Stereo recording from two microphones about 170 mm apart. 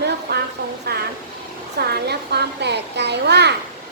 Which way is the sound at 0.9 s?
70° right (ahead or behind).